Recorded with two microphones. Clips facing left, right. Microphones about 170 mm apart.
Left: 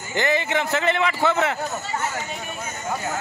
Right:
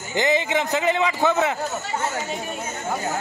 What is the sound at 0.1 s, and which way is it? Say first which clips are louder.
A man's voice: right 1 dB; 15° right (ahead or behind).